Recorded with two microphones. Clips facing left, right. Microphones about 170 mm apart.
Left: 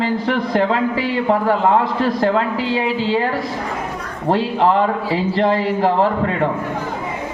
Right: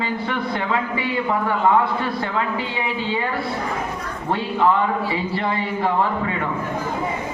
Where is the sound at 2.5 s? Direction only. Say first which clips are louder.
Left 6 dB; 90° left.